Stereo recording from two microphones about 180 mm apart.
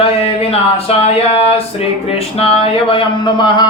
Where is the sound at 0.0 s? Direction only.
35° left (ahead or behind).